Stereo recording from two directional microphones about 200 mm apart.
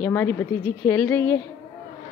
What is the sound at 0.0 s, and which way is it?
Music, 10° left (ahead or behind).